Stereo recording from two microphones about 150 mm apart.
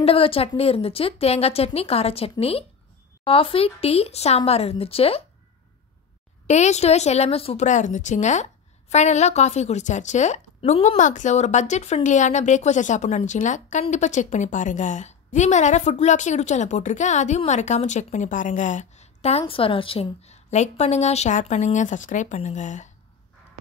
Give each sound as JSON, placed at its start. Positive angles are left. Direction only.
{"t": 0.0, "sound": "a woman's voice", "side_deg": 40}
{"t": 6.4, "sound": "a woman's voice", "side_deg": 50}